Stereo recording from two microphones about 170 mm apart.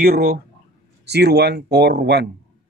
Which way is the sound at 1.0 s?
75° right (ahead or behind).